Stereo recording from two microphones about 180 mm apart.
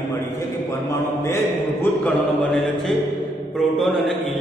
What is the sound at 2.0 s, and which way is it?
Speech, 5° left (ahead or behind).